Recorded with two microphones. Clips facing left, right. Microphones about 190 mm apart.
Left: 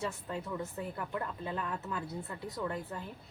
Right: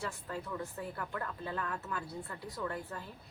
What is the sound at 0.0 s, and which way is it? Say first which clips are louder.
Speech: left 3 dB; 20° left (ahead or behind).